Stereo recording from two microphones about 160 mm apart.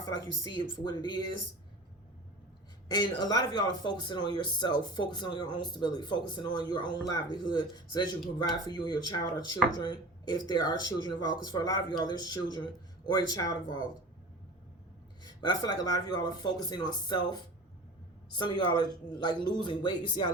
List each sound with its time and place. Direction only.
0.0 s speech: 25° left (ahead or behind)
2.9 s speech: 25° left (ahead or behind)
15.2 s speech: 25° left (ahead or behind)